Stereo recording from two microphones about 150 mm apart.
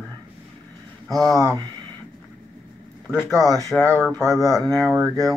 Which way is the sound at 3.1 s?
20° left (ahead or behind).